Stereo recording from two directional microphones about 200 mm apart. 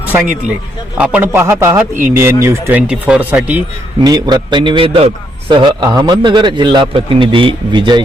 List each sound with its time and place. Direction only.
0.9 s a man's voice: 5° right (ahead or behind)
4.0 s a man's voice: 20° right (ahead or behind)